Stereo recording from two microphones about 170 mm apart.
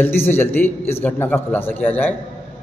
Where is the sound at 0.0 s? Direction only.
15° left (ahead or behind).